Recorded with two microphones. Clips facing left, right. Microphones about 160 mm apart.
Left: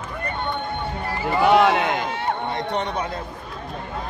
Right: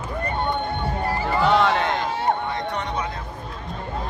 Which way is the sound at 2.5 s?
30° left (ahead or behind).